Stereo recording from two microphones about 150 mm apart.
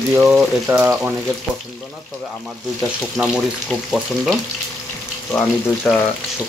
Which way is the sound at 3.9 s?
Centre (ahead or behind).